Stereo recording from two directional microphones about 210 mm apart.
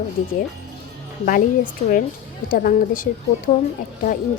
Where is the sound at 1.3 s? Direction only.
40° left (ahead or behind).